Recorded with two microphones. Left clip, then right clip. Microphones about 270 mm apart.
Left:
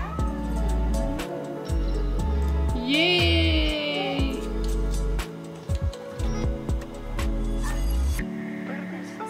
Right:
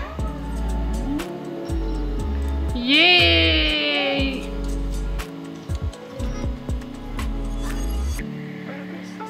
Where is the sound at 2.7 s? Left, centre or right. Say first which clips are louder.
Right 7 dB; centre.